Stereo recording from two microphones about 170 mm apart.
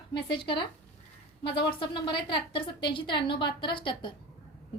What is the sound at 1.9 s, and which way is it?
A woman's voice, 30° left (ahead or behind).